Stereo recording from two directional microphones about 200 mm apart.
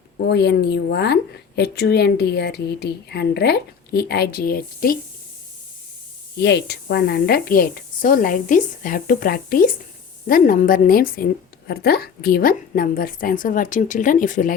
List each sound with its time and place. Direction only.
0.3 s a woman's voice: 55° left (ahead or behind)
6.4 s a woman's voice: 55° left (ahead or behind); by 14.5 s 40° left (ahead or behind)